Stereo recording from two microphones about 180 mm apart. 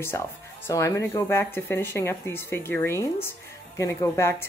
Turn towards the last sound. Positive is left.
turn(degrees=15)  # may be behind; listen again after turning